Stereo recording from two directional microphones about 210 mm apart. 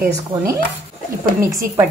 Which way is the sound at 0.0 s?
15° right (ahead or behind).